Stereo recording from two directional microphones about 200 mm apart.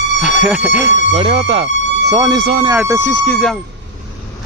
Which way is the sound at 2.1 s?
15° right (ahead or behind).